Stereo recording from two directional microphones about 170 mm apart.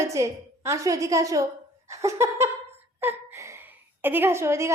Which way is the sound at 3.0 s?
15° right (ahead or behind).